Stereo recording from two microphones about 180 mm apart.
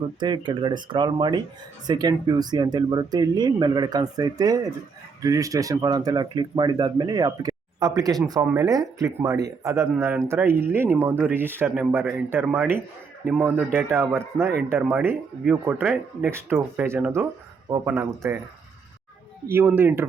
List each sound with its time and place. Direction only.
0.2 s speech: 25° right (ahead or behind)
19.5 s speech: 10° right (ahead or behind)